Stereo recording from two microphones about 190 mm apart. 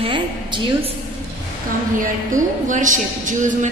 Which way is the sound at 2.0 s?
45° right (ahead or behind).